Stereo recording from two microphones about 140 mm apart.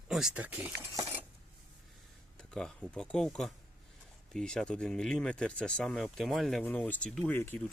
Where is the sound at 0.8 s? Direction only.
20° right (ahead or behind).